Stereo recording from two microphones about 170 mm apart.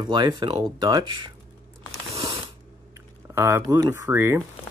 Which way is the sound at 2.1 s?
35° right (ahead or behind).